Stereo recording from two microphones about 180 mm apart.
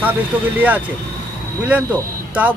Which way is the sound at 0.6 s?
10° right (ahead or behind).